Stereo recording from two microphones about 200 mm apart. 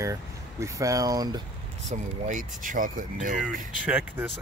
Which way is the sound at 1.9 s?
40° right (ahead or behind).